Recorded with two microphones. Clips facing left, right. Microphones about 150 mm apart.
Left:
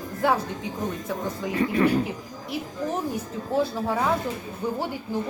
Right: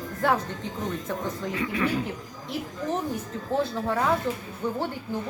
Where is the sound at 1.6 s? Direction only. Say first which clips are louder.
Left 6 dB; 40° left (ahead or behind).